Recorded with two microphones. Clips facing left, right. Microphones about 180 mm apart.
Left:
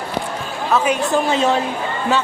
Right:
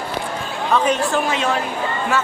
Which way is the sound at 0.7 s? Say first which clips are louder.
Even; 5° left (ahead or behind).